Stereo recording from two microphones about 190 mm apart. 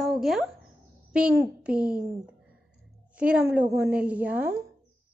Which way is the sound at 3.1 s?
5° right (ahead or behind).